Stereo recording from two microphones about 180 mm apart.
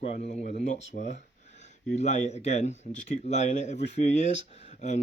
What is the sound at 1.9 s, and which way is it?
Speech, 40° left (ahead or behind).